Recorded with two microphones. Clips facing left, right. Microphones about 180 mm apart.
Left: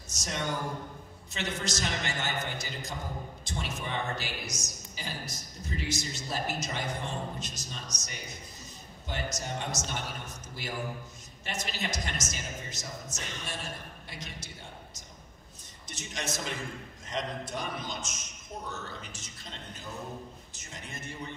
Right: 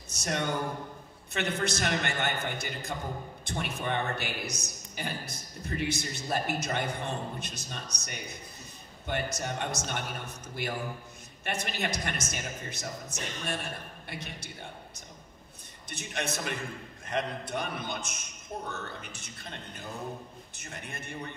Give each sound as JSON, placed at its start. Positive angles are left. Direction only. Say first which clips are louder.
{"t": 0.1, "sound": "a man's voice", "louder": "right 3 dB", "side_deg": -60}
{"t": 15.9, "sound": "a man's voice", "louder": "right 2 dB", "side_deg": -60}